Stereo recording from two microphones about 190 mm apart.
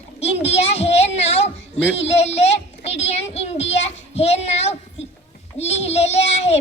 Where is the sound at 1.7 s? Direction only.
70° left (ahead or behind).